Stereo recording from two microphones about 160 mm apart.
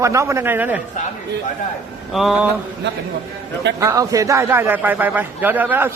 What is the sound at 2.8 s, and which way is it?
Speech, 90° right.